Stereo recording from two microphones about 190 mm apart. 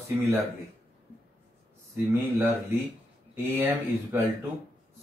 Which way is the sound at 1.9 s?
10° right (ahead or behind).